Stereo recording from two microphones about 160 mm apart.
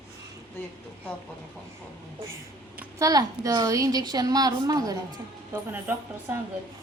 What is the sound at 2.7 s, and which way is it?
A woman's voice, 20° right (ahead or behind).